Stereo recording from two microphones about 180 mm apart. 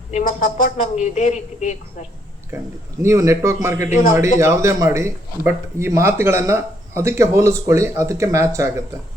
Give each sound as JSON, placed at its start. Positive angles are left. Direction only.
{"t": 0.1, "sound": "speech", "side_deg": 45}
{"t": 3.0, "sound": "speech", "side_deg": -15}
{"t": 3.8, "sound": "a man's voice", "side_deg": 45}
{"t": 4.4, "sound": "speech", "side_deg": -15}